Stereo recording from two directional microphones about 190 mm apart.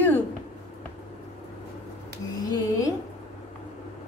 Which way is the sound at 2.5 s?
20° left (ahead or behind).